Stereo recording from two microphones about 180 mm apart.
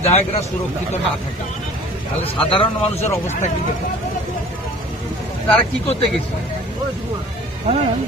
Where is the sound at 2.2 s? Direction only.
30° left (ahead or behind).